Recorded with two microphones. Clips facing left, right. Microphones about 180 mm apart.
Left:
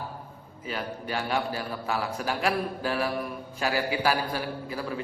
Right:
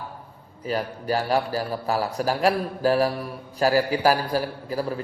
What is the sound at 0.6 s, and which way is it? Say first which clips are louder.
A man's voice: right 6 dB; 40° right (ahead or behind).